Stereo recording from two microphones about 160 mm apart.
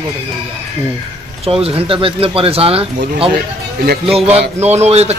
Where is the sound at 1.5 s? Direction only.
35° right (ahead or behind).